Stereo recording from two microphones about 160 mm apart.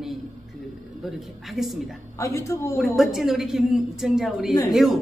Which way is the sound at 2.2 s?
20° left (ahead or behind).